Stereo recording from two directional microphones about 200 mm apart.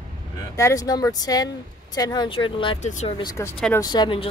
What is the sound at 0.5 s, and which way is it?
Speech, 15° left (ahead or behind).